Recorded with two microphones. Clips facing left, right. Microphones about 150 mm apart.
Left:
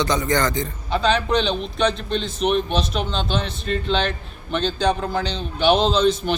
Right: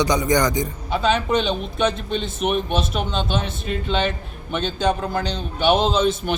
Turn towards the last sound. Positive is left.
turn(degrees=-5)  # may be behind; listen again after turning